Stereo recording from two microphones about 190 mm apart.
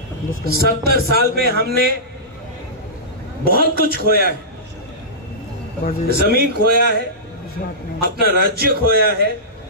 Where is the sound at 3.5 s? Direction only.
55° right (ahead or behind).